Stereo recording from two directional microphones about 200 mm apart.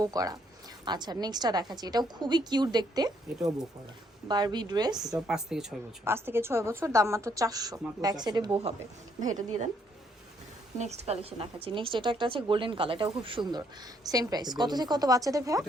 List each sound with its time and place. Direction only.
0.0 s a woman's voice: 20° right (ahead or behind)
4.3 s a woman's voice: 20° right (ahead or behind)
5.1 s a woman's voice: 5° right (ahead or behind); by 8.7 s 25° right (ahead or behind)
9.2 s a woman's voice: 40° right (ahead or behind)
10.8 s a woman's voice: 35° right (ahead or behind); by 15.6 s 15° right (ahead or behind)